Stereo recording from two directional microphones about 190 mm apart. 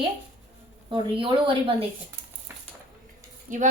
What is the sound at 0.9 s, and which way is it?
A woman's voice, 25° right (ahead or behind).